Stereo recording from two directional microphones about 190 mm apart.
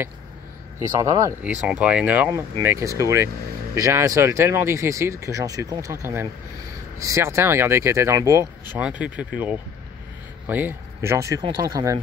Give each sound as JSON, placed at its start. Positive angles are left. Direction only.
{"t": 0.7, "sound": "speech", "side_deg": -10}
{"t": 8.7, "sound": "speech", "side_deg": -5}